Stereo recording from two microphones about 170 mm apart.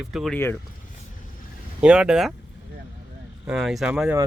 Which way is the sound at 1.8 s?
5° right (ahead or behind).